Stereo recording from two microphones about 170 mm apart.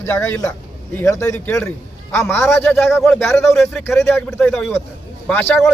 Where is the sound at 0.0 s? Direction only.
15° left (ahead or behind).